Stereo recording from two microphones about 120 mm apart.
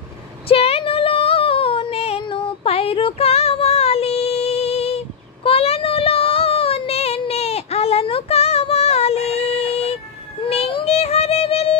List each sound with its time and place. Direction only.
0.5 s child singing: 55° left (ahead or behind)
10.7 s a sound: 45° left (ahead or behind)
11.0 s music: 65° left (ahead or behind)